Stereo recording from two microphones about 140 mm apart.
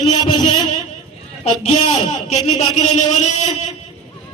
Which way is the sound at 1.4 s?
55° left (ahead or behind).